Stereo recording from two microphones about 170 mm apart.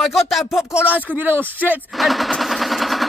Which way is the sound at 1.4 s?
10° left (ahead or behind).